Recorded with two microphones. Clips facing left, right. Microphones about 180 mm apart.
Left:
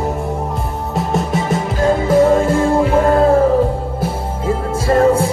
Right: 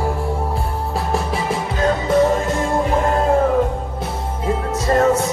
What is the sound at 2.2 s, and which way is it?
Music, 30° left (ahead or behind).